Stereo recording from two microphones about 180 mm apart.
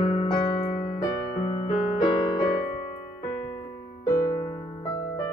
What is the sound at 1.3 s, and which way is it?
Music, 30° left (ahead or behind).